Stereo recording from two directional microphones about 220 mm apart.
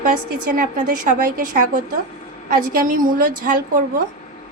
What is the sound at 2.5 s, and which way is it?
A woman's voice, 40° right (ahead or behind).